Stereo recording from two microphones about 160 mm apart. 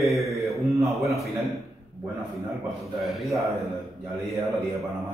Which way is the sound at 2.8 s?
Centre (ahead or behind).